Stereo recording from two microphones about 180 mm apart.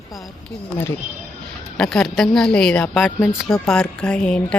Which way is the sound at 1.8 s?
Centre (ahead or behind).